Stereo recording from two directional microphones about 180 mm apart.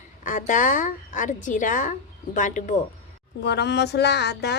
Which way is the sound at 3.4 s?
70° left (ahead or behind).